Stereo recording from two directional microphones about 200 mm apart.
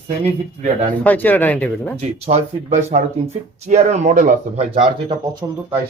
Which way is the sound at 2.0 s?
35° right (ahead or behind).